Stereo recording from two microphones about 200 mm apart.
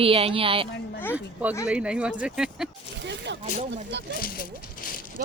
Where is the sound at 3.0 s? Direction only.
60° right (ahead or behind).